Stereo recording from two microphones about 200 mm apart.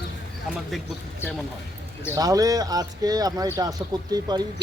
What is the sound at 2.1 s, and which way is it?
Speech, 20° right (ahead or behind).